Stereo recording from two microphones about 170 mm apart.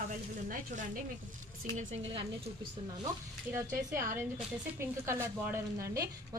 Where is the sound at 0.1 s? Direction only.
50° right (ahead or behind).